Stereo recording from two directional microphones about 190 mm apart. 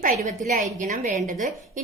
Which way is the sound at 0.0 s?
45° right (ahead or behind).